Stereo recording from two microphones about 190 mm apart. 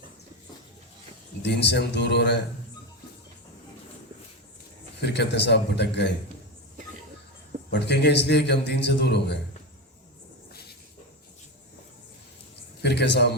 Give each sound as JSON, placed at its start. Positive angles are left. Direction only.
{"t": 1.4, "sound": "a man's voice", "side_deg": 65}
{"t": 4.9, "sound": "a man's voice", "side_deg": 65}
{"t": 7.7, "sound": "a man's voice", "side_deg": 65}
{"t": 12.8, "sound": "a man's voice", "side_deg": 65}